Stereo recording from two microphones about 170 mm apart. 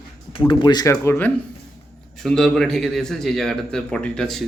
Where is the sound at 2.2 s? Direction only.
Centre (ahead or behind).